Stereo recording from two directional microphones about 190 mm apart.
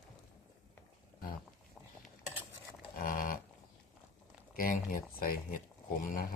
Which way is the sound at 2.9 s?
45° left (ahead or behind).